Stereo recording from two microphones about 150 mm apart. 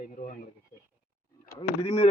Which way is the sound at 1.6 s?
45° left (ahead or behind).